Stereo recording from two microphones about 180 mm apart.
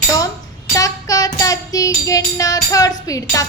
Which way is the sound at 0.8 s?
20° left (ahead or behind).